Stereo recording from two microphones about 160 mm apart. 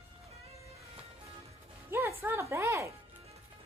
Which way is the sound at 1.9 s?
15° right (ahead or behind).